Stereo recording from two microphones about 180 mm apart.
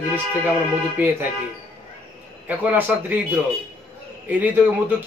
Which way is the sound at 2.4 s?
10° right (ahead or behind).